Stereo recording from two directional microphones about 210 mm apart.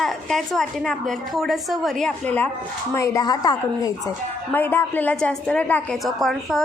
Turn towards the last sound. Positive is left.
turn(degrees=0)  # may be behind; listen again after turning